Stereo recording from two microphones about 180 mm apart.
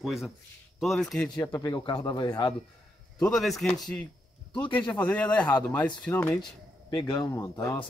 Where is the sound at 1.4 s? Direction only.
20° left (ahead or behind).